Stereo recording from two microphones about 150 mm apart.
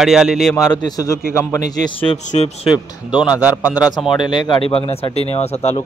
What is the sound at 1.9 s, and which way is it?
Speech, 40° left (ahead or behind).